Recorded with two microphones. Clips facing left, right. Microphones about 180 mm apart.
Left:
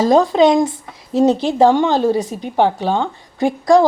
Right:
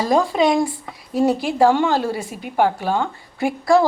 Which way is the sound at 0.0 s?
20° left (ahead or behind).